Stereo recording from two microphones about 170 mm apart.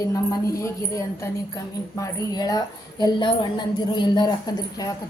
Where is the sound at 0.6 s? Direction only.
15° left (ahead or behind).